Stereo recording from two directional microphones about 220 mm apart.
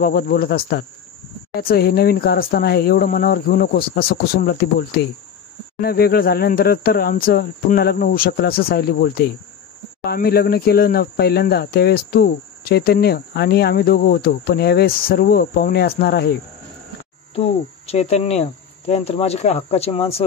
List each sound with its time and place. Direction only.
0.0 s speech: 40° left (ahead or behind)
17.4 s cricket: 30° left (ahead or behind)